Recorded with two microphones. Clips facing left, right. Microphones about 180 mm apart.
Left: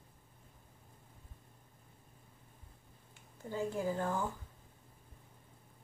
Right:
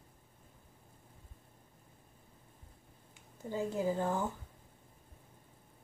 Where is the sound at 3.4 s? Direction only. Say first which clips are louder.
Right 2 dB; 20° right (ahead or behind).